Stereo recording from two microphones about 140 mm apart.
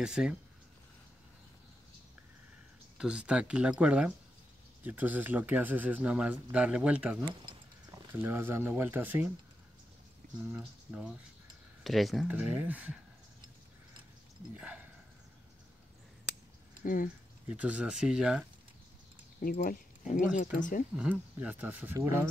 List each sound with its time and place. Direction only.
0.0 s speech: 5° right (ahead or behind)
3.0 s speech: 5° right (ahead or behind)
10.5 s speech: 10° right (ahead or behind)
12.3 s speech: 10° right (ahead or behind)
14.5 s speech: 10° right (ahead or behind)
16.8 s speech: 80° left
17.5 s speech: 10° right (ahead or behind)
19.5 s speech: 65° left (ahead or behind)
20.9 s speech: 10° right (ahead or behind)